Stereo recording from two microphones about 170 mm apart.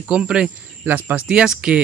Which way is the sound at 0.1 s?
5° right (ahead or behind).